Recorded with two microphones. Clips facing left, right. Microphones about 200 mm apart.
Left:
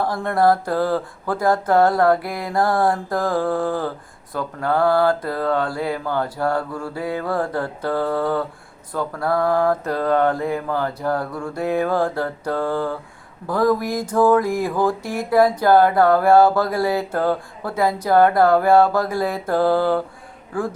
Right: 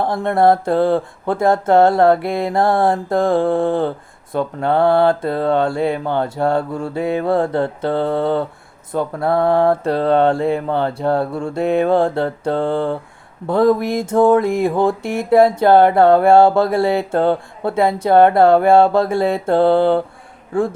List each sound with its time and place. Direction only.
0.0 s mantra: 25° right (ahead or behind)